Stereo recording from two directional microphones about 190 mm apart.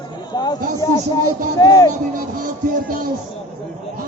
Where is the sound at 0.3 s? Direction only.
20° left (ahead or behind).